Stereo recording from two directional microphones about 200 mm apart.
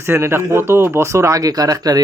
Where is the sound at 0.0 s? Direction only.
15° right (ahead or behind).